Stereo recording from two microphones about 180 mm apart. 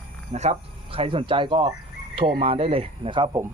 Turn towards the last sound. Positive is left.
turn(degrees=-25)  # may be behind; listen again after turning